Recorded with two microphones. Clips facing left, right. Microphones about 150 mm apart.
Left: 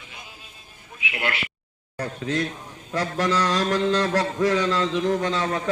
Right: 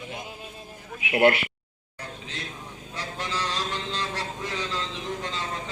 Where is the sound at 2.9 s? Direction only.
90° left.